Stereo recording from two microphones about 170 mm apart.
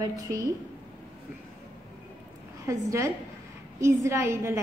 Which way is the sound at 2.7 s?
15° right (ahead or behind).